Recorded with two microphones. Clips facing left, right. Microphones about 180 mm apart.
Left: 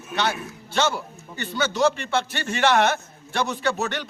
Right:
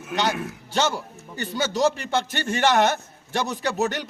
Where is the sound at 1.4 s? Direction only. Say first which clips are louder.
Even; 40° right (ahead or behind).